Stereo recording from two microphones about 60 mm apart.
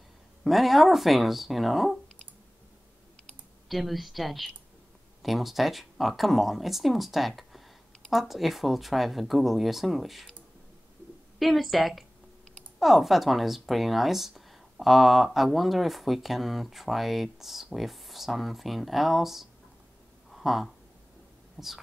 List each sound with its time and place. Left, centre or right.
0.4 s speech: centre
3.6 s speech: centre
11.3 s speech: centre
20.2 s a sound: centre
21.6 s speech: centre